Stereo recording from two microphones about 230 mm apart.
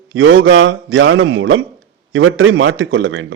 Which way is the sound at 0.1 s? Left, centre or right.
Right.